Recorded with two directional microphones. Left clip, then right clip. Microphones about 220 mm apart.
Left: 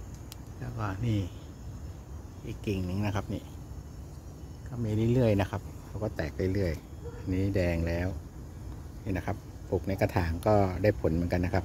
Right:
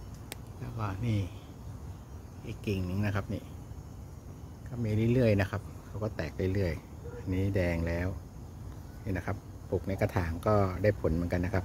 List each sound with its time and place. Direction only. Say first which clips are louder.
0.7 s speech: left 2 dB; 5° left (ahead or behind)
2.4 s speech: left 1 dB; centre (ahead or behind)
4.8 s speech: left 1 dB; centre (ahead or behind)